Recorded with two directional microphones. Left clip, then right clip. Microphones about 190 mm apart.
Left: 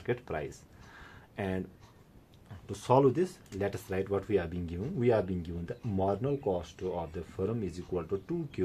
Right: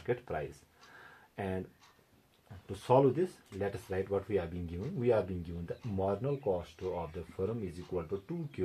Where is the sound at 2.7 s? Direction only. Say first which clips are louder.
Left 2 dB; 35° left (ahead or behind).